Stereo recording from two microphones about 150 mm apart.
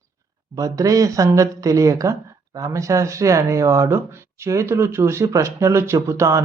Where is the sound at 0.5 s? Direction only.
20° right (ahead or behind).